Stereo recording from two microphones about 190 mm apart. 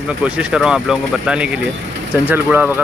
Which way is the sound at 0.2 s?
5° right (ahead or behind).